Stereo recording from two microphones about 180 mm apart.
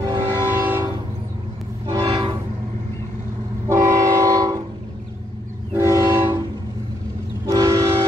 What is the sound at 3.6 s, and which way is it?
Train, 15° right (ahead or behind).